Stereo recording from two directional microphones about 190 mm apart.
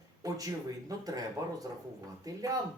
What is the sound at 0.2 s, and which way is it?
Speech, 20° right (ahead or behind).